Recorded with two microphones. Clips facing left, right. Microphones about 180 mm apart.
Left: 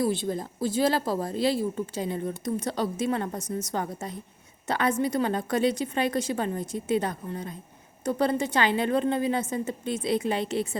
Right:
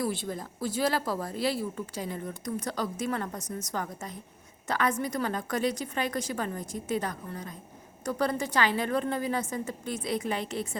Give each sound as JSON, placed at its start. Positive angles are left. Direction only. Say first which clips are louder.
{"t": 0.0, "sound": "speech", "louder": "left 5 dB", "side_deg": 25}